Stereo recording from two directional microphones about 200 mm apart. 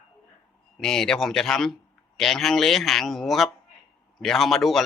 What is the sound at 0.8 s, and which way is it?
A man's voice, 5° left (ahead or behind).